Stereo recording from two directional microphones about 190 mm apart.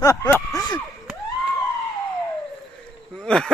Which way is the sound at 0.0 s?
15° left (ahead or behind).